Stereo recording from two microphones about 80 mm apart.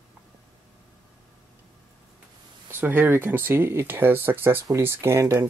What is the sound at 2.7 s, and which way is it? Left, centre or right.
Speech, right.